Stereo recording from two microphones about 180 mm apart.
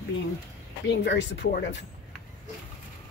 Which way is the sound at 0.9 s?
75° left (ahead or behind).